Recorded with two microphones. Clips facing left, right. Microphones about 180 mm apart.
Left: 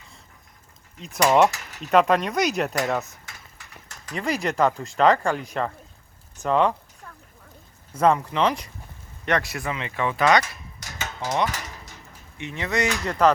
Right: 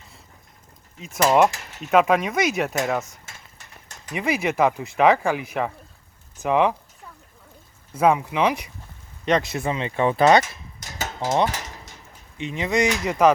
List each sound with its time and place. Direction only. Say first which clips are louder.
0.9 s speech: right 1 dB; centre (ahead or behind)
4.2 s speech: right 2 dB; 5° right (ahead or behind)
6.4 s a sound: right 1 dB; 10° right (ahead or behind)
7.9 s speech: right 1 dB; 10° right (ahead or behind)